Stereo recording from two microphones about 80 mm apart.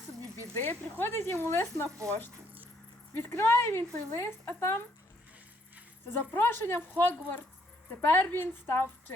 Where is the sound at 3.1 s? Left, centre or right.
Left.